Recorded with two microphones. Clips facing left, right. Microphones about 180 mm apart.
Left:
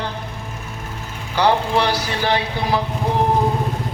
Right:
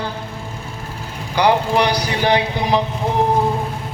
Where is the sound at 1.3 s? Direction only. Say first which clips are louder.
Right 1 dB; 15° right (ahead or behind).